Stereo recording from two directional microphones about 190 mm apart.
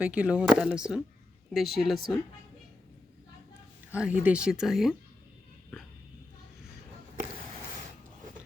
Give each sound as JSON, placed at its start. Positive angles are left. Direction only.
{"t": 0.0, "sound": "speech", "side_deg": -5}
{"t": 3.9, "sound": "speech", "side_deg": -5}